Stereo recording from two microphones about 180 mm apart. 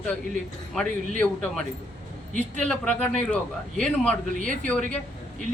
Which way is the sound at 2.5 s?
5° left (ahead or behind).